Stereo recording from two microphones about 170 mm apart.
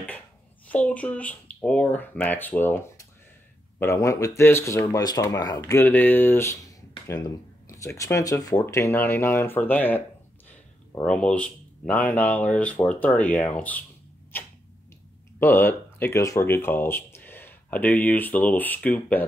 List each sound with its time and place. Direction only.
0.7 s speech: 10° left (ahead or behind)
3.8 s speech: 20° left (ahead or behind)
10.5 s a sound: 15° left (ahead or behind)
11.1 s speech: 5° left (ahead or behind)
15.3 s speech: 10° left (ahead or behind)